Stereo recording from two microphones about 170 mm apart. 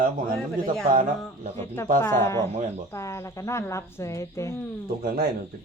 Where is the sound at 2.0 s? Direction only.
15° left (ahead or behind).